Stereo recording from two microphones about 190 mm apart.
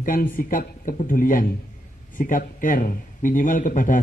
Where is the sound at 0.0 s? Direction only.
45° left (ahead or behind).